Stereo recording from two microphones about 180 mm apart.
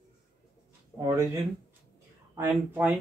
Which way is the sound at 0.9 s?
15° right (ahead or behind).